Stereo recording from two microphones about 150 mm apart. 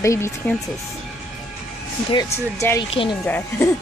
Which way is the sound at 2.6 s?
20° left (ahead or behind).